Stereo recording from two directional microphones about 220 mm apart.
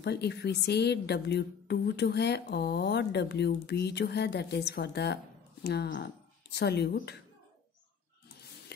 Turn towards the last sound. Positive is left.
turn(degrees=50)  # may be behind; listen again after turning